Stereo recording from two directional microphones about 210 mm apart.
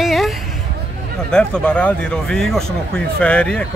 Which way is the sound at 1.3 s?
5° left (ahead or behind).